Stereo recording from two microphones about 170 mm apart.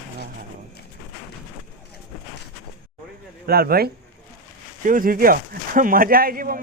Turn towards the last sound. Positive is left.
turn(degrees=-60)  # may be behind; listen again after turning